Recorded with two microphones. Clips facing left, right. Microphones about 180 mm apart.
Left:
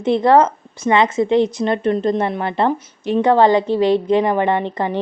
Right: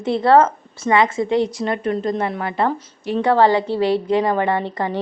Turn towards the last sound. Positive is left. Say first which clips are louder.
# left 2 dB
turn(degrees=20)  # may be behind; listen again after turning